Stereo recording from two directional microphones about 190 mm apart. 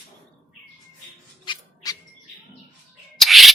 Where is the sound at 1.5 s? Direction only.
20° left (ahead or behind).